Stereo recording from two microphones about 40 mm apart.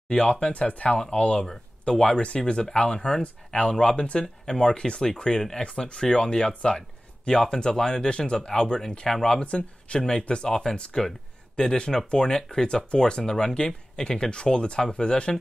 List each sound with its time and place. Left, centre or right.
0.1 s speech: left
0.5 s speech: left
0.9 s speech: centre
9.4 s speech: left